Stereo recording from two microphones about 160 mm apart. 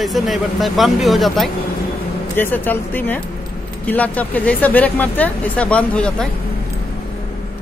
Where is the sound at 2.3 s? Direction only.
10° left (ahead or behind).